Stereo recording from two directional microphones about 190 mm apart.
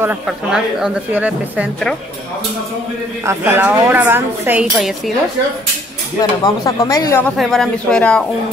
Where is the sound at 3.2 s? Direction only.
15° right (ahead or behind).